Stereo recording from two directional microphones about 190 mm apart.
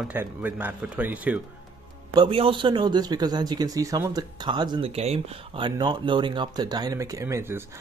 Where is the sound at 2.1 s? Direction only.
25° right (ahead or behind).